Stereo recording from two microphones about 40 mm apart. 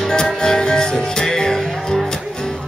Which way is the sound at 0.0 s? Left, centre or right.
Centre.